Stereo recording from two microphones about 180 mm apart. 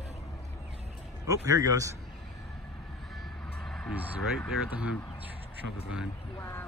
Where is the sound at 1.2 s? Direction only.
20° right (ahead or behind).